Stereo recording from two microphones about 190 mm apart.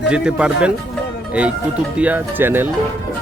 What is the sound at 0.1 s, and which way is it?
Speech, 5° right (ahead or behind).